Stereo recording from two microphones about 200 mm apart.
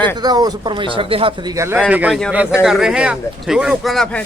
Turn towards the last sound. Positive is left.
turn(degrees=5)  # may be behind; listen again after turning